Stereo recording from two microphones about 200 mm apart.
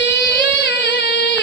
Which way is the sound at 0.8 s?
60° left (ahead or behind).